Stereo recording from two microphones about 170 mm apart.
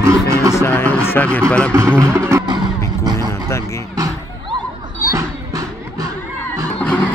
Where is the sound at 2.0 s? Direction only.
15° right (ahead or behind).